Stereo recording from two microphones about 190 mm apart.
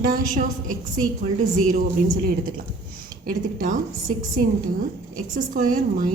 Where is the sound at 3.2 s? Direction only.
45° right (ahead or behind).